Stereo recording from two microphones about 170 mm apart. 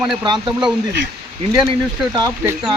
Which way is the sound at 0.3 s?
25° right (ahead or behind).